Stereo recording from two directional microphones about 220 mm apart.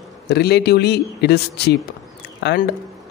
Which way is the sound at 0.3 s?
50° left (ahead or behind).